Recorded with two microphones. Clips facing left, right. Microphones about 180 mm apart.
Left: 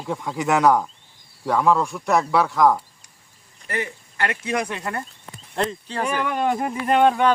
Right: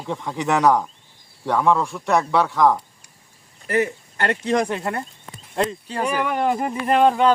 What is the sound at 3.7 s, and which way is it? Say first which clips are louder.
Speech: right 7 dB; 50° right (ahead or behind).